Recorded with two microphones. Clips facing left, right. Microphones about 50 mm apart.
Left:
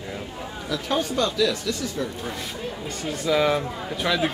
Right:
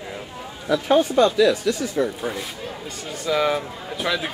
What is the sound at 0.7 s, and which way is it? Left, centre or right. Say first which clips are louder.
Speech: right 8 dB; centre.